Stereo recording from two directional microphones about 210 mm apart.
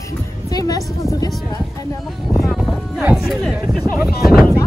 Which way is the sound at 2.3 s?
Centre (ahead or behind).